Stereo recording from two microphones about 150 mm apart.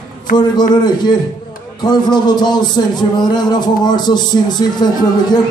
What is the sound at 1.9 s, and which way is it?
A man's voice, 30° left (ahead or behind).